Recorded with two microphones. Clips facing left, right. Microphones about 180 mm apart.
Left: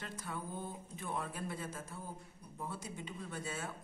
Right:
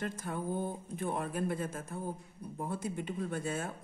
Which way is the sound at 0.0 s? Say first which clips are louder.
Right 7 dB; 50° right (ahead or behind).